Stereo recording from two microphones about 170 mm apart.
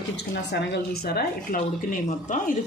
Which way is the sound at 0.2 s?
85° left.